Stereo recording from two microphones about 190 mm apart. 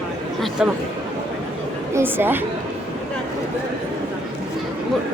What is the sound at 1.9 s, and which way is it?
Speech, 10° right (ahead or behind).